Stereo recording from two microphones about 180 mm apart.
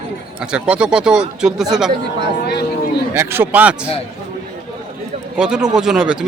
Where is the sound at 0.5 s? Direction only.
5° right (ahead or behind).